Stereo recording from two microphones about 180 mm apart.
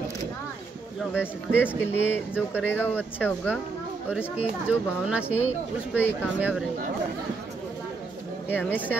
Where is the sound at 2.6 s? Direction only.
10° left (ahead or behind).